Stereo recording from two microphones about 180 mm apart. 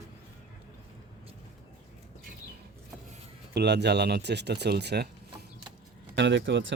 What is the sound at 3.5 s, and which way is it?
Speech, 65° right (ahead or behind).